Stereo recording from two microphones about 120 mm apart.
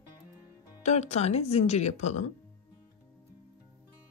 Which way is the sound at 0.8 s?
70° left (ahead or behind).